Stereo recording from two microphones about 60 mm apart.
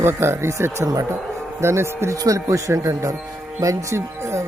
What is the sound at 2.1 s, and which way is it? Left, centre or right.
Speech, right.